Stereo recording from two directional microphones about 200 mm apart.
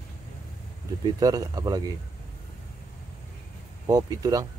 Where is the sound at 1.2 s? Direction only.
15° right (ahead or behind).